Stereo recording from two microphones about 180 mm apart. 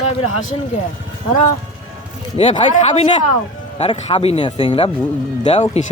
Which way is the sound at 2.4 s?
30° left (ahead or behind).